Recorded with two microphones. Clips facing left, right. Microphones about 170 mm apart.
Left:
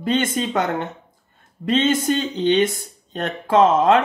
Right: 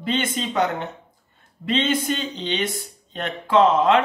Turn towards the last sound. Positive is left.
turn(degrees=45)  # may be behind; listen again after turning